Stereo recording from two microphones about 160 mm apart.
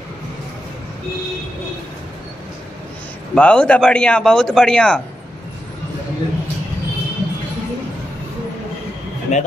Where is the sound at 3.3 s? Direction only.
5° left (ahead or behind).